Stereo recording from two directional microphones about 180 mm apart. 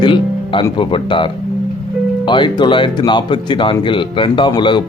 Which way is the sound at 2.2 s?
25° left (ahead or behind).